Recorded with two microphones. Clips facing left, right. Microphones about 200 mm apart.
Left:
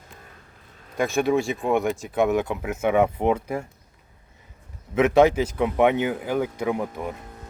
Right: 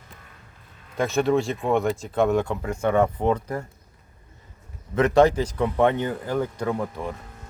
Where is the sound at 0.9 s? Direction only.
15° left (ahead or behind).